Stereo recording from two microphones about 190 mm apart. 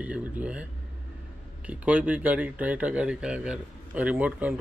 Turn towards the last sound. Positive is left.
turn(degrees=-10)  # may be behind; listen again after turning